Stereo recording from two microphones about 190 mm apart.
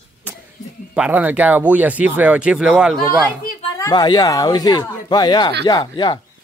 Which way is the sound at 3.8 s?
20° left (ahead or behind).